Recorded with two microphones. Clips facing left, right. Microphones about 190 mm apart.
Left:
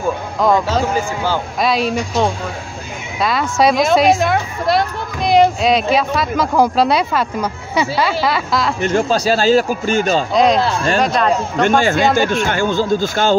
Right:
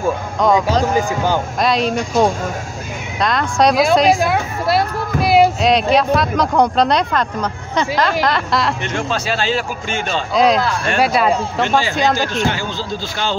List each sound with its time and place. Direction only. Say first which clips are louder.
0.4 s speech: even; centre (ahead or behind)
0.9 s speech: right 2 dB; 15° right (ahead or behind)
1.6 s speech: left 1 dB; centre (ahead or behind)
3.2 s a woman's voice: even; 5° left (ahead or behind)
8.8 s speech: left 6 dB; 35° left (ahead or behind)
10.3 s speech: even; centre (ahead or behind)
10.6 s speech: left 3 dB; 30° left (ahead or behind)
11.0 s speech: right 3 dB; 5° right (ahead or behind)
11.6 s speech: left 4 dB; 50° left (ahead or behind)